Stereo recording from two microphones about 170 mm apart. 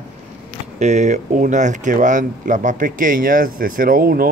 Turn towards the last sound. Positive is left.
turn(degrees=-60)  # may be behind; listen again after turning